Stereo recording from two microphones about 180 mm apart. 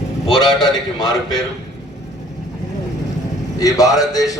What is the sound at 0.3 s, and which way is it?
A man's voice, 20° left (ahead or behind).